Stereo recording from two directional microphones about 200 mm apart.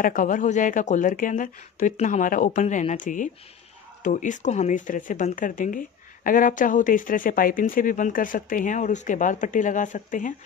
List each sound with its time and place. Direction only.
0.0 s speech: 40° left (ahead or behind)